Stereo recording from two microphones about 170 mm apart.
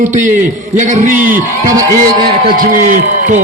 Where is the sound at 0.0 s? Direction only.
45° right (ahead or behind).